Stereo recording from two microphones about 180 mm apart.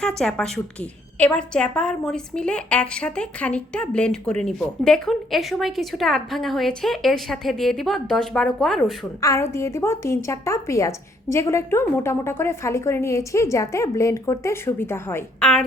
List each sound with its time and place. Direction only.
0.2 s a woman's voice: 5° left (ahead or behind)
9.2 s a woman's voice: 15° left (ahead or behind)